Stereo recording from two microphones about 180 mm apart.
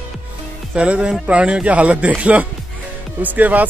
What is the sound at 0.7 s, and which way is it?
A man's voice, 5° right (ahead or behind).